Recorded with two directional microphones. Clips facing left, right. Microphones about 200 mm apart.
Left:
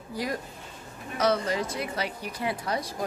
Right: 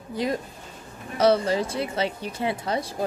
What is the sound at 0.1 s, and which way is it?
Speech, 25° right (ahead or behind).